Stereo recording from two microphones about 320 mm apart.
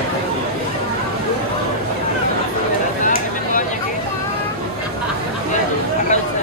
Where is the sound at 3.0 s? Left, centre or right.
Left.